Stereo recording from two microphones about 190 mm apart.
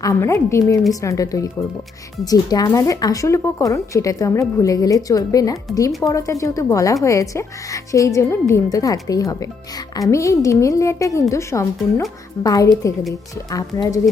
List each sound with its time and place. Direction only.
0.0 s speech: 15° left (ahead or behind)